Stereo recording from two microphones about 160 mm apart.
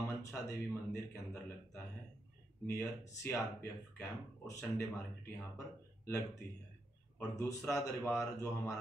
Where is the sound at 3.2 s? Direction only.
15° left (ahead or behind).